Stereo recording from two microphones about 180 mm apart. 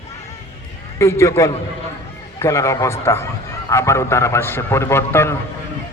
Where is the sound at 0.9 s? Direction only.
15° left (ahead or behind).